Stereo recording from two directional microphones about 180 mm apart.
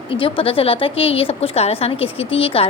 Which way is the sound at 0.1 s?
30° left (ahead or behind).